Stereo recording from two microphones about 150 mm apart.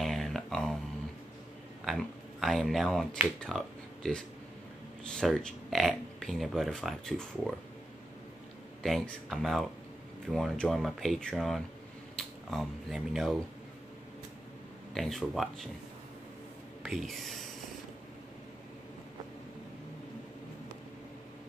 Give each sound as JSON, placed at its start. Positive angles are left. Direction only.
{"t": 0.0, "sound": "a sound", "side_deg": 0}
{"t": 1.9, "sound": "speech", "side_deg": 0}
{"t": 8.8, "sound": "speech", "side_deg": 0}
{"t": 15.0, "sound": "speech", "side_deg": 0}
{"t": 16.8, "sound": "speech", "side_deg": 0}